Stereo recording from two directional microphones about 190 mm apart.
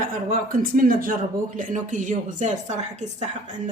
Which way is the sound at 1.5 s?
45° right (ahead or behind).